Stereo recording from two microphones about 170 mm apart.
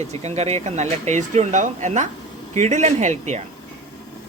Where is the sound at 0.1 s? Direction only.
40° right (ahead or behind).